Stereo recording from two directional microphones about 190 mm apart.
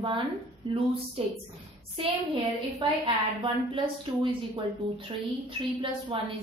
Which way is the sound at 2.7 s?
25° right (ahead or behind).